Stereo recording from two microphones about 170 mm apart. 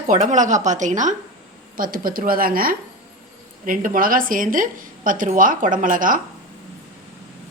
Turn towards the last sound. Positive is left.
turn(degrees=-55)  # may be behind; listen again after turning